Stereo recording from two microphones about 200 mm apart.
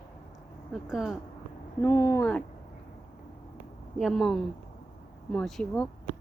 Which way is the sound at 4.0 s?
Centre (ahead or behind).